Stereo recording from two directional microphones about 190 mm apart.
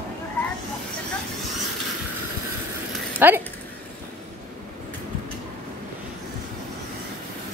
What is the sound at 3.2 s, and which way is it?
Speech, 10° right (ahead or behind).